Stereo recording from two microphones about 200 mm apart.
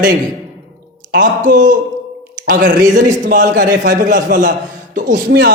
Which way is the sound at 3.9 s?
40° right (ahead or behind).